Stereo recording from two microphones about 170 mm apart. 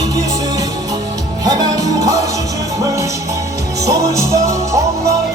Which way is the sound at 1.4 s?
20° right (ahead or behind).